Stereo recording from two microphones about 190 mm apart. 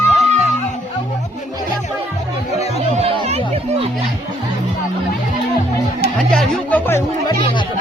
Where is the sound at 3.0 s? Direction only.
30° right (ahead or behind).